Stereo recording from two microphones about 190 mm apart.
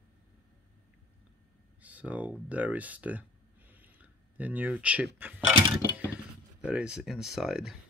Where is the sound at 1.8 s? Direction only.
10° right (ahead or behind).